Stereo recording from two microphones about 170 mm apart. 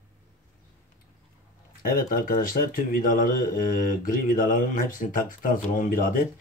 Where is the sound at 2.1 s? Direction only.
55° left (ahead or behind).